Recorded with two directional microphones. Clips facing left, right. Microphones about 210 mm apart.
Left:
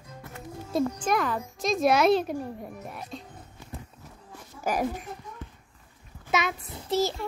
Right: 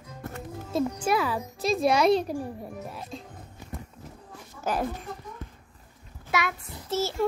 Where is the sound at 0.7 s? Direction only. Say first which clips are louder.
Even; 10° right (ahead or behind).